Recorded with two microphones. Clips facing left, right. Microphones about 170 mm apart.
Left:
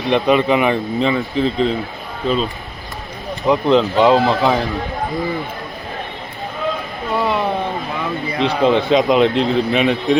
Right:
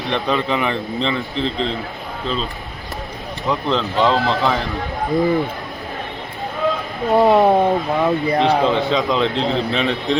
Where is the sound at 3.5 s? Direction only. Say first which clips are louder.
Left 7 dB; 15° left (ahead or behind).